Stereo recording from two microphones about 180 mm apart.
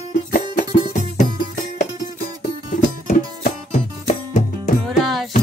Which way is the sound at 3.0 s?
50° left (ahead or behind).